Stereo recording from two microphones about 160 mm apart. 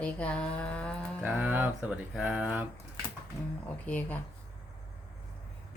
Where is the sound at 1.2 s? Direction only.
10° right (ahead or behind).